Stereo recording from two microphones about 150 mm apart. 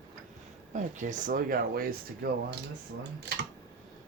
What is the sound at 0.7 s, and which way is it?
Speech, 55° right (ahead or behind).